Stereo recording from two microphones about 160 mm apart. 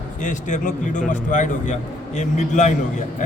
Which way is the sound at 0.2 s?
50° left (ahead or behind).